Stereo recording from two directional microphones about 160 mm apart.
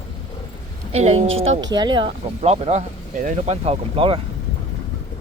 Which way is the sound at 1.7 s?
30° right (ahead or behind).